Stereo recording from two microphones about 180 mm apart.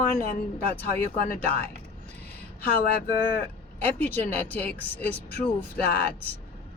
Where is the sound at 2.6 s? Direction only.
55° left (ahead or behind).